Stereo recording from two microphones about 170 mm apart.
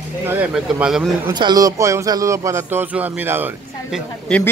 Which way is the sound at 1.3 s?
25° right (ahead or behind).